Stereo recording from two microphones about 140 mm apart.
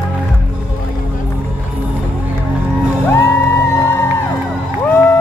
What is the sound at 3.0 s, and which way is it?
Music, 20° left (ahead or behind).